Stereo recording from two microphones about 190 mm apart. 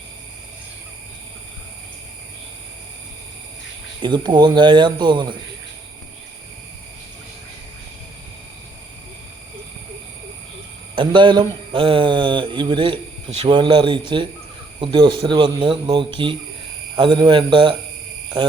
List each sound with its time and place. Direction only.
4.0 s speech: 25° right (ahead or behind)
10.9 s speech: 25° right (ahead or behind)